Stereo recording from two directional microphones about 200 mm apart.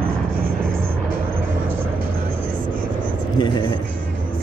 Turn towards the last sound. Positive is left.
turn(degrees=20)  # may be behind; listen again after turning